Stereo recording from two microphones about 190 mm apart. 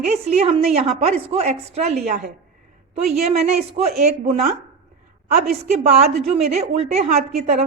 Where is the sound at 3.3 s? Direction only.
35° right (ahead or behind).